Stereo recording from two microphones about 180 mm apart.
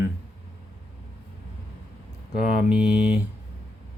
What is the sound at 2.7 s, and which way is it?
Speech, 5° right (ahead or behind).